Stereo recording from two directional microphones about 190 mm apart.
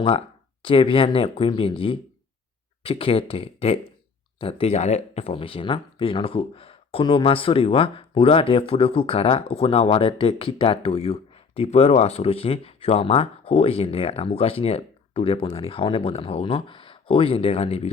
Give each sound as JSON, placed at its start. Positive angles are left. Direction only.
{"t": 0.0, "sound": "speech", "side_deg": 30}